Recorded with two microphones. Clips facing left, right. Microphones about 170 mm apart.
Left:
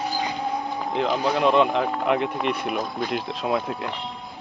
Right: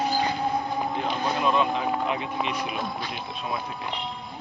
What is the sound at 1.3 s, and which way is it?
Speech, 70° left (ahead or behind).